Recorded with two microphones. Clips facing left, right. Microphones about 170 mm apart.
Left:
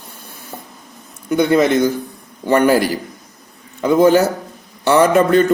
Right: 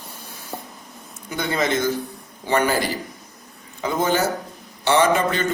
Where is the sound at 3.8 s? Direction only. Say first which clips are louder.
Left 9 dB; 60° left (ahead or behind).